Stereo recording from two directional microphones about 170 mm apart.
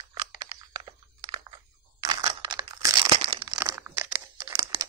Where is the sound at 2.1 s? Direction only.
25° right (ahead or behind).